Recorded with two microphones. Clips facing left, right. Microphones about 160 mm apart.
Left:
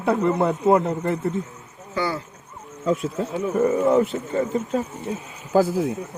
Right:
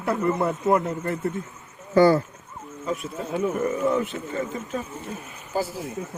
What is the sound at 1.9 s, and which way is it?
Speech, 50° right (ahead or behind).